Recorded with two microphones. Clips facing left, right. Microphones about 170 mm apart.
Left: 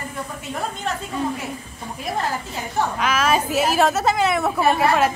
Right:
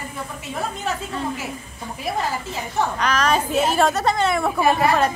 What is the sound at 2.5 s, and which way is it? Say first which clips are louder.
A woman's voice: even; 5° left (ahead or behind).